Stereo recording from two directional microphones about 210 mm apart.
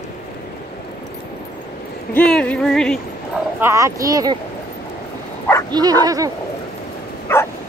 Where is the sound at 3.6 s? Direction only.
15° right (ahead or behind).